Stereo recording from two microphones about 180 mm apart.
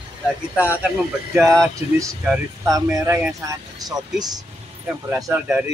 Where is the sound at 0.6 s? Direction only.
10° right (ahead or behind).